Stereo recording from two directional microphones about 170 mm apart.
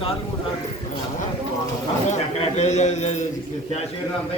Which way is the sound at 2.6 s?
40° left (ahead or behind).